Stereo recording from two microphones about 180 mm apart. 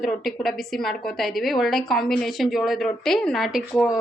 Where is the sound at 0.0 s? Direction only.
Centre (ahead or behind).